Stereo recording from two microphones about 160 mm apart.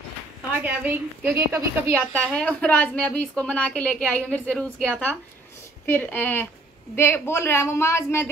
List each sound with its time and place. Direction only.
0.7 s a woman's voice: 10° right (ahead or behind)
2.3 s a woman's voice: 5° left (ahead or behind)